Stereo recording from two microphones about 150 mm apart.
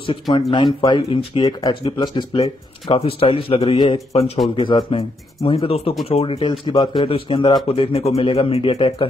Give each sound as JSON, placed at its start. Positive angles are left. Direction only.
{"t": 0.0, "sound": "speech", "side_deg": 35}